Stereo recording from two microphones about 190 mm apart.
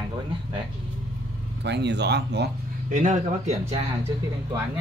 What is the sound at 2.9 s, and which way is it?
Speech, 40° right (ahead or behind).